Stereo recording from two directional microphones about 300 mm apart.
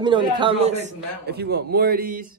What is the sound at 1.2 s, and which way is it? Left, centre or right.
Speech, right.